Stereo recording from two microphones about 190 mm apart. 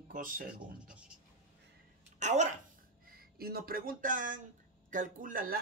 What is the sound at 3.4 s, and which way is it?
Speech, 55° right (ahead or behind).